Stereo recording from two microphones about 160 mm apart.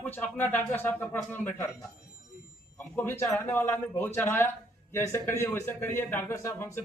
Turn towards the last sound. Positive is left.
turn(degrees=15)  # may be behind; listen again after turning